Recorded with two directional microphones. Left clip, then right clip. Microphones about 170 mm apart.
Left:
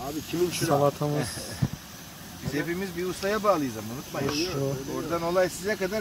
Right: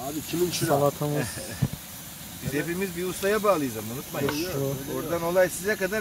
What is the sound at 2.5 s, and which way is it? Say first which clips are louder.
Speech: right 1 dB; 45° right (ahead or behind).